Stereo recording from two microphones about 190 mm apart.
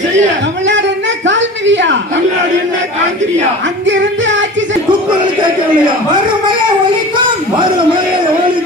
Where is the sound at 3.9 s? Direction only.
75° right (ahead or behind).